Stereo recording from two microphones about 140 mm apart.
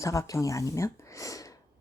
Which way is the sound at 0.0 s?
20° left (ahead or behind).